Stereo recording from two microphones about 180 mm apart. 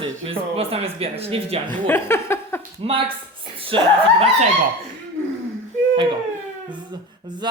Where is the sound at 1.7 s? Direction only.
10° left (ahead or behind).